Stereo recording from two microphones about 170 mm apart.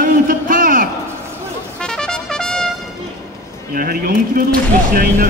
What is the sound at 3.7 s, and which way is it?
Speech, 55° right (ahead or behind).